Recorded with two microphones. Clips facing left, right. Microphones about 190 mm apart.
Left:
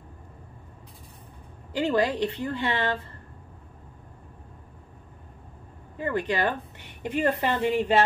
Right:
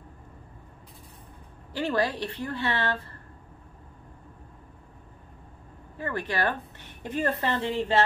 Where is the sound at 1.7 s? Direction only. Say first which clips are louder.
Left 3 dB; 15° left (ahead or behind).